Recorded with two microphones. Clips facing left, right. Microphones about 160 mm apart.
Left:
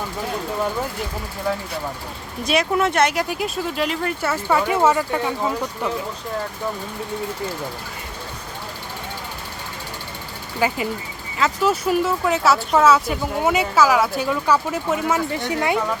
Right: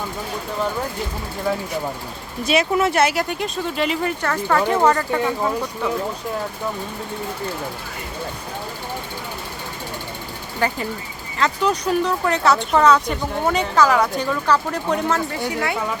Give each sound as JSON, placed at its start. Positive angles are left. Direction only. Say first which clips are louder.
{"t": 1.5, "sound": "speech", "louder": "right 2 dB", "side_deg": 0}
{"t": 10.6, "sound": "speech", "louder": "left 1 dB", "side_deg": 10}
{"t": 15.4, "sound": "speech", "louder": "left 5 dB", "side_deg": 20}